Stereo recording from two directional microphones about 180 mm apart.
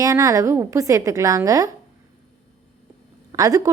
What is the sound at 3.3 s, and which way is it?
Speech, 20° right (ahead or behind).